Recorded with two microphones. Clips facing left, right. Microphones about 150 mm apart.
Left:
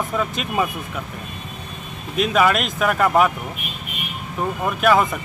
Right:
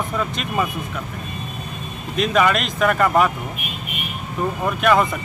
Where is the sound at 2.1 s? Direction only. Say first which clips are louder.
Even; 5° left (ahead or behind).